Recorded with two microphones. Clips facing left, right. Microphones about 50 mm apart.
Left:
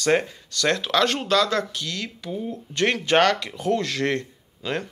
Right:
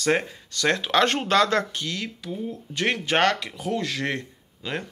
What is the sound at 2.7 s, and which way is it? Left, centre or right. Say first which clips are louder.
Speech: left 4 dB; centre.